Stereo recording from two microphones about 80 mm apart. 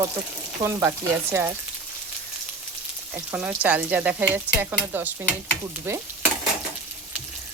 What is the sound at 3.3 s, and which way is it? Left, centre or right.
Frying, right.